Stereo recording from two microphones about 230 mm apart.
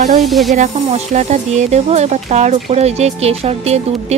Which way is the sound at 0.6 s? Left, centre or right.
Right.